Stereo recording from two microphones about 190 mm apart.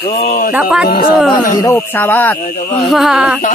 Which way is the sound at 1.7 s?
10° left (ahead or behind).